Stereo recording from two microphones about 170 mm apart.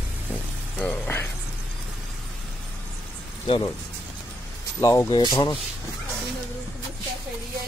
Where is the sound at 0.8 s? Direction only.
10° left (ahead or behind).